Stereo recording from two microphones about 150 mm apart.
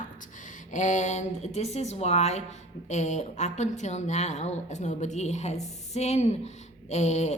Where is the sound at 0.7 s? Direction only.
55° left (ahead or behind).